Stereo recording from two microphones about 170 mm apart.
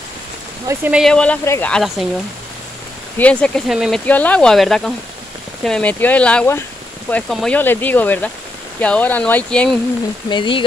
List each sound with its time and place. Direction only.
0.7 s speech: 10° right (ahead or behind)
1.0 s speech: 5° left (ahead or behind)
1.7 s speech: centre (ahead or behind)
3.2 s speech: 5° left (ahead or behind)
4.0 s speech: 10° left (ahead or behind)
10.3 s speech: 30° left (ahead or behind)